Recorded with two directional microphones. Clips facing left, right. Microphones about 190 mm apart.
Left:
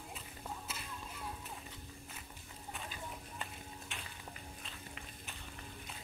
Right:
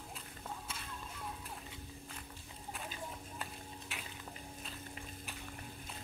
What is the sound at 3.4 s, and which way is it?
Stir, 5° right (ahead or behind).